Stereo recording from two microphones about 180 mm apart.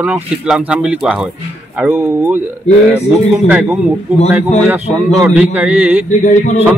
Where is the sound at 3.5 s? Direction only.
10° right (ahead or behind).